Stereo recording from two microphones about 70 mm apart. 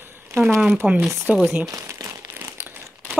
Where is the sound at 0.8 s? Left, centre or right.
Centre.